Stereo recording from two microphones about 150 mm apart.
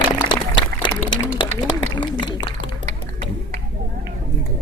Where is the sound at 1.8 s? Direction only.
30° left (ahead or behind).